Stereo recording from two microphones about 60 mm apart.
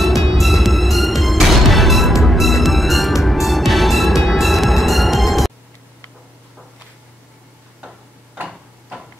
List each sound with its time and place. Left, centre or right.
0.0 s music: centre